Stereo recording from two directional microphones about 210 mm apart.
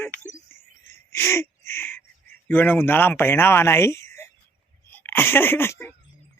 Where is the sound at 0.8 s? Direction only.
10° left (ahead or behind).